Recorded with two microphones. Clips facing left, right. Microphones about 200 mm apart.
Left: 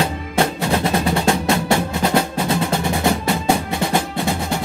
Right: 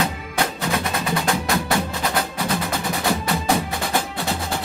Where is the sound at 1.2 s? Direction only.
25° left (ahead or behind).